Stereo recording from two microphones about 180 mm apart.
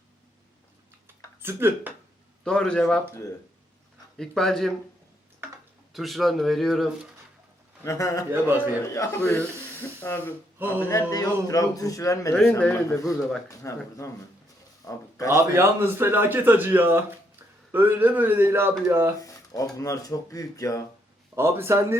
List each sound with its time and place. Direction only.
1.0 s a sound: 10° right (ahead or behind)
2.4 s speech: 5° left (ahead or behind)
4.2 s speech: centre (ahead or behind)
5.9 s speech: centre (ahead or behind)
7.9 s speech: 20° left (ahead or behind)
8.3 s a man's voice: 10° right (ahead or behind)
8.8 s speech: 15° left (ahead or behind)
12.3 s speech: 5° left (ahead or behind)
15.4 s a man's voice: 15° right (ahead or behind)
19.2 s speech: 20° left (ahead or behind)
21.3 s a man's voice: 15° right (ahead or behind)